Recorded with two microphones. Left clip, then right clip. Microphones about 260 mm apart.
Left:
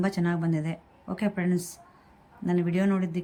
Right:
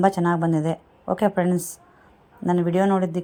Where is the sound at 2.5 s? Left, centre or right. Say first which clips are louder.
Right 7 dB; right.